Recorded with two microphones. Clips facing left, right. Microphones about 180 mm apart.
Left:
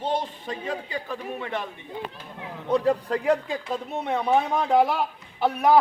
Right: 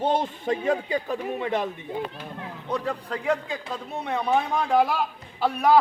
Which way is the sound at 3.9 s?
20° left (ahead or behind).